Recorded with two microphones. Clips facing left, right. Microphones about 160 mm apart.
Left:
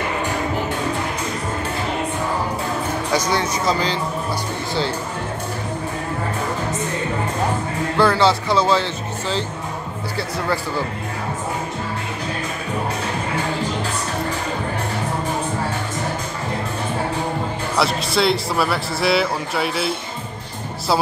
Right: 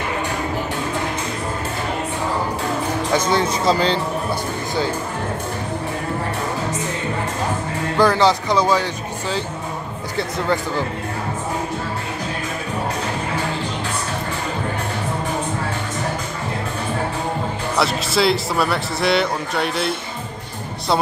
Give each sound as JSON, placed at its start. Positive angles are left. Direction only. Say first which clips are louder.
{"t": 3.3, "sound": "speech", "louder": "right 2 dB", "side_deg": -25}
{"t": 8.0, "sound": "speech", "louder": "right 1 dB", "side_deg": -15}
{"t": 17.7, "sound": "a man's voice", "louder": "even", "side_deg": 0}